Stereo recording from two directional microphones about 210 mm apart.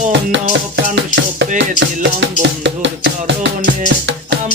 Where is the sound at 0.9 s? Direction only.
60° right (ahead or behind).